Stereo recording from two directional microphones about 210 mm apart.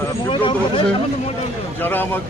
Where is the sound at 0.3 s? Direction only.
25° left (ahead or behind).